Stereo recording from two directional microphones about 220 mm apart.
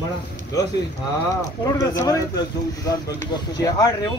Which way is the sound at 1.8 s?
15° left (ahead or behind).